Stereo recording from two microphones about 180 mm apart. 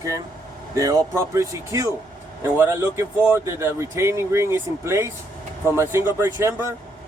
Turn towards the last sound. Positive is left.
turn(degrees=-15)  # may be behind; listen again after turning